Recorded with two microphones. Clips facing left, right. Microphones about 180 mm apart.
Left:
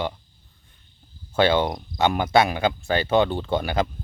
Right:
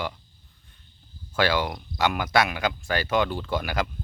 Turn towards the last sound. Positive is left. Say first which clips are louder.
# left 4 dB
turn(degrees=25)  # may be behind; listen again after turning